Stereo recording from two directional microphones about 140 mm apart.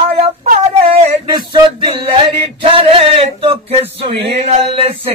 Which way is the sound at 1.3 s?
30° right (ahead or behind).